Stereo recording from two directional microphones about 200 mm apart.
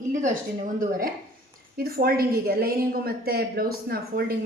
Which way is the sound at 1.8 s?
50° right (ahead or behind).